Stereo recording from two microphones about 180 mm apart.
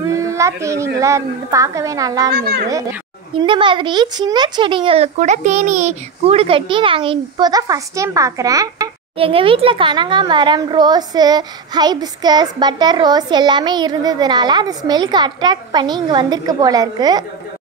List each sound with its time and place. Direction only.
0.0 s a woman's voice: 15° right (ahead or behind)
2.3 s speech: 60° right (ahead or behind)
3.3 s a child's voice: 25° right (ahead or behind)
9.2 s a child's voice: 30° right (ahead or behind)